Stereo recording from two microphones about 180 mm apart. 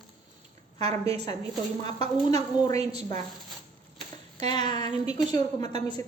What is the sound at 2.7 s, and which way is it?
Speech, 35° right (ahead or behind).